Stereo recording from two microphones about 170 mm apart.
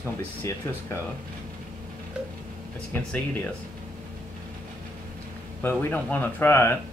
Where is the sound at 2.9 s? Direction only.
10° left (ahead or behind).